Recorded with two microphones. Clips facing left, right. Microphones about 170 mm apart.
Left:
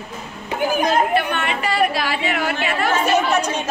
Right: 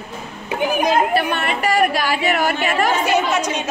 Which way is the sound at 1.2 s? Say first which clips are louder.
Right 1 dB; 40° right (ahead or behind).